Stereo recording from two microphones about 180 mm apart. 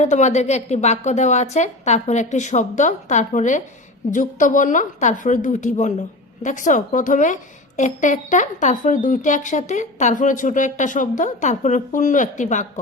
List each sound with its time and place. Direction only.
0.0 s a woman's voice: 40° left (ahead or behind)